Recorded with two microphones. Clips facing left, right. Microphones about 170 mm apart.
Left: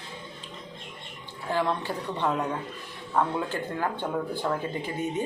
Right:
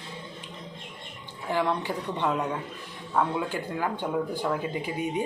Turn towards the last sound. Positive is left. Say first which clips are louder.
# right 1 dB
turn(degrees=-10)  # may be behind; listen again after turning